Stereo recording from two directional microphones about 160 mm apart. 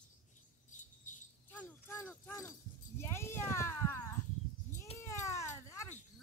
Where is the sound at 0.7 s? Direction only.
50° left (ahead or behind).